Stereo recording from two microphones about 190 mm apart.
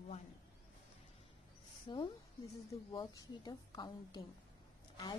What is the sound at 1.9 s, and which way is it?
Speech, 30° left (ahead or behind).